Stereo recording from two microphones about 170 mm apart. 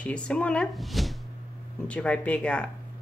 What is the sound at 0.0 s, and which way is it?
Speech, 5° left (ahead or behind).